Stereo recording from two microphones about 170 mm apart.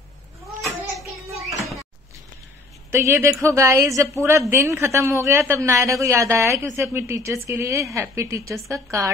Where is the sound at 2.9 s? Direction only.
15° right (ahead or behind).